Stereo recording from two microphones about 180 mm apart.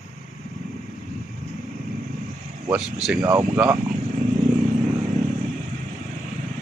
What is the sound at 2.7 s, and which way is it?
Speech, 5° right (ahead or behind).